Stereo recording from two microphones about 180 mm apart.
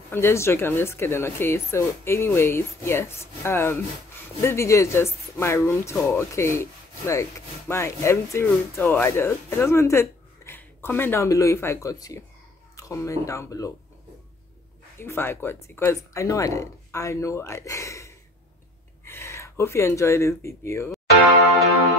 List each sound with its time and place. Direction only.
0.1 s speech: 15° left (ahead or behind)
15.0 s speech: 10° left (ahead or behind)